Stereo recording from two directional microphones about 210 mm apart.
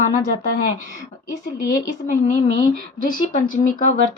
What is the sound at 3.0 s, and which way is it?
Speech, 40° left (ahead or behind).